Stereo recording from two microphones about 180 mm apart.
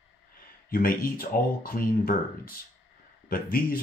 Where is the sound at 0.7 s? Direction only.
55° left (ahead or behind).